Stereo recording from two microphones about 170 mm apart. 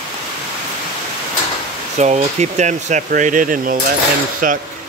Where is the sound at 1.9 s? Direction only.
40° right (ahead or behind).